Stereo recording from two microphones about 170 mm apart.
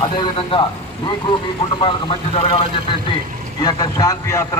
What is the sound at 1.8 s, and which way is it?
A man's voice, 30° left (ahead or behind).